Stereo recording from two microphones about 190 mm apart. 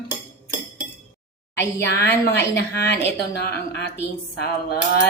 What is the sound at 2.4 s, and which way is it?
Speech, 60° left (ahead or behind).